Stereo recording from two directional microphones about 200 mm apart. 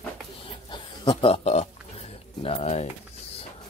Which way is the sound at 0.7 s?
25° left (ahead or behind).